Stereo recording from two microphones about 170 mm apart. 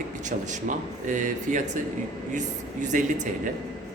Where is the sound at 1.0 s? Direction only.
50° right (ahead or behind).